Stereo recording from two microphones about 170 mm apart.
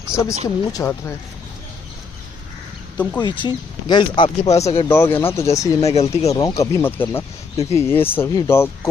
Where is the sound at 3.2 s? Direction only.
25° left (ahead or behind).